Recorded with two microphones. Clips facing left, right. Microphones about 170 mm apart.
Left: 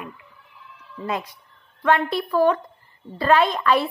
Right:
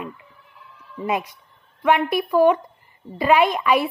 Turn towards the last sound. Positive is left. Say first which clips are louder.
# right 1 dB
turn(degrees=-15)  # may be behind; listen again after turning